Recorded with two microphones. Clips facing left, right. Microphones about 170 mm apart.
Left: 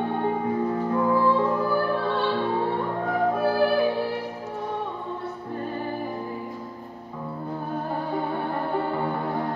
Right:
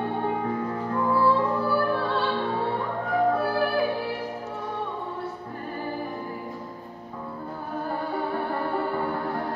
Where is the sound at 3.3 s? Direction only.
20° left (ahead or behind).